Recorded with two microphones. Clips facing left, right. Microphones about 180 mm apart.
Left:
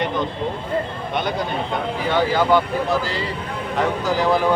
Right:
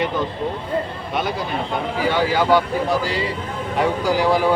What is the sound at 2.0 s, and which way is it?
Speech, 10° right (ahead or behind).